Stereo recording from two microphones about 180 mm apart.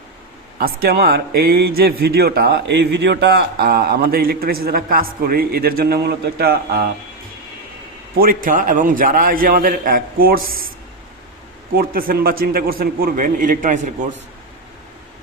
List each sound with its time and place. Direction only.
0.6 s a man's voice: 60° right (ahead or behind)
8.1 s a man's voice: 55° right (ahead or behind)
11.7 s a man's voice: 55° right (ahead or behind)